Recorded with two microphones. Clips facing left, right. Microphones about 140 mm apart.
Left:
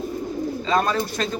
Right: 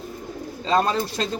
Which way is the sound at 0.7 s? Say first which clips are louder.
Right 1 dB; 30° right (ahead or behind).